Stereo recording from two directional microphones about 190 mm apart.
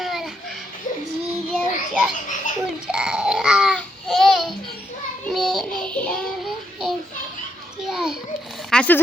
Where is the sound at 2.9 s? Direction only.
5° right (ahead or behind).